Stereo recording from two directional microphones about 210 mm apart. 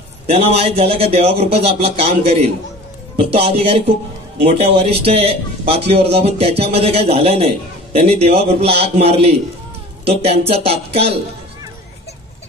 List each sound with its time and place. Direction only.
0.3 s a man's voice: 25° right (ahead or behind)